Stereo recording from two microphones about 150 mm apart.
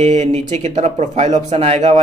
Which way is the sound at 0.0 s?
50° right (ahead or behind).